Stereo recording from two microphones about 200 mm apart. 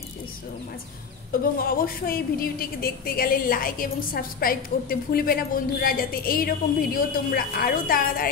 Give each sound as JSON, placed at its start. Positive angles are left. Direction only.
{"t": 1.3, "sound": "a woman's voice", "side_deg": 45}